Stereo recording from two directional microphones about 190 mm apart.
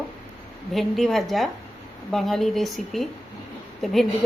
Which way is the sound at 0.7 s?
Centre (ahead or behind).